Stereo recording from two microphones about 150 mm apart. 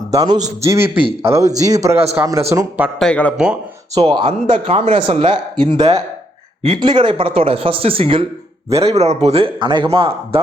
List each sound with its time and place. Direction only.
0.1 s a man's voice: 25° right (ahead or behind)
3.0 s speech: 10° left (ahead or behind)
3.3 s speech: 5° right (ahead or behind)
3.9 s speech: 30° right (ahead or behind)